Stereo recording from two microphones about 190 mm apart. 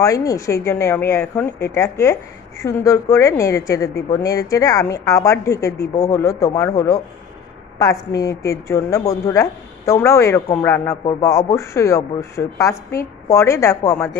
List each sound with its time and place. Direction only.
0.0 s a woman's voice: 15° left (ahead or behind)